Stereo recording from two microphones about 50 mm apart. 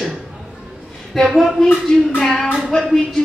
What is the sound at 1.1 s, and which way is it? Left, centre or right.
Speech, centre.